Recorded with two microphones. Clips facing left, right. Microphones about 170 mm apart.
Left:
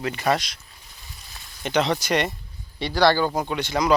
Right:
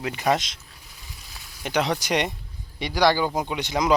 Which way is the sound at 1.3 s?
5° right (ahead or behind).